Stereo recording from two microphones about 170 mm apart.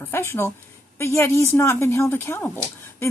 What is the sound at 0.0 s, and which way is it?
Speech, 15° left (ahead or behind).